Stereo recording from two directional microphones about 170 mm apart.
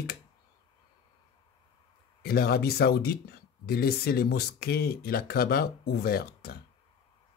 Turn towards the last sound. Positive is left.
turn(degrees=65)  # may be behind; listen again after turning